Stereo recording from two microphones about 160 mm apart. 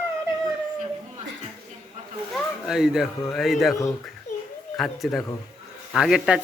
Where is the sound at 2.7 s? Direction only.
5° right (ahead or behind).